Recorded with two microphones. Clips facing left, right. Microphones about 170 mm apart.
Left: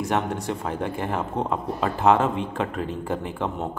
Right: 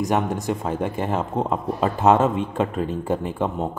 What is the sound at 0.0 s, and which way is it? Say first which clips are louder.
Speech: right 3 dB; 20° right (ahead or behind).